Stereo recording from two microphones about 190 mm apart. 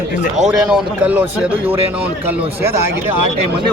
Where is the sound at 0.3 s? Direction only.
5° right (ahead or behind).